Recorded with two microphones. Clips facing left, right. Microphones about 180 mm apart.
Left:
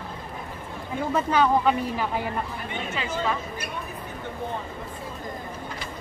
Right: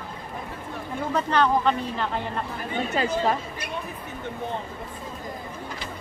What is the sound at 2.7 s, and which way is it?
Speech, 40° right (ahead or behind).